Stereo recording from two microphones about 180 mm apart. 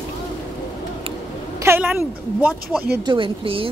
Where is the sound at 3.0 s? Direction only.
30° right (ahead or behind).